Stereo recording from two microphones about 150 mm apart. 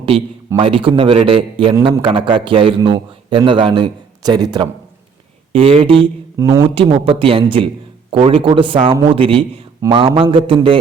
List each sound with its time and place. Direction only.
0.0 s a man's voice: 35° right (ahead or behind)
5.5 s a man's voice: 40° right (ahead or behind)
6.3 s speech: 25° right (ahead or behind)
6.6 s a man's voice: 35° right (ahead or behind)
9.8 s speech: 20° right (ahead or behind)
10.3 s a man's voice: 35° right (ahead or behind)